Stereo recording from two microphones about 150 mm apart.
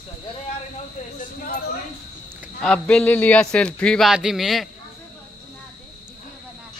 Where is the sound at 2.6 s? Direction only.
5° left (ahead or behind).